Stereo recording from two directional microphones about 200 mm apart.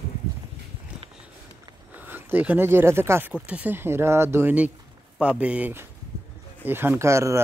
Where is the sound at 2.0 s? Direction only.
10° right (ahead or behind).